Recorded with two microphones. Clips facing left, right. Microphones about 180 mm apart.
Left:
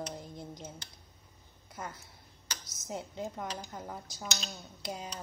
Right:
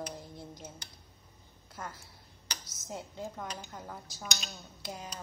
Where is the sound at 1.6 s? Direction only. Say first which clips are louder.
Left 1 dB; 15° left (ahead or behind).